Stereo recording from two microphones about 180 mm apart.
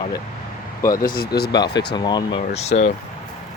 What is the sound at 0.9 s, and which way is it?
Speech, 50° left (ahead or behind).